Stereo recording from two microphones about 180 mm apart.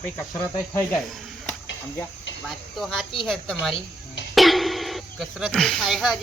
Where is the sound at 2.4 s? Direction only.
Centre (ahead or behind).